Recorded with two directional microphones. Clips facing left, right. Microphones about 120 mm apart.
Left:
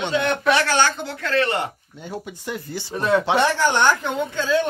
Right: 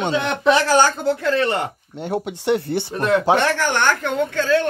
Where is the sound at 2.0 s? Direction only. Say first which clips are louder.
Right 8 dB; 70° right (ahead or behind).